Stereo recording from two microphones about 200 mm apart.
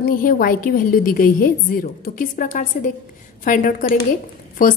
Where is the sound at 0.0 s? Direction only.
45° left (ahead or behind).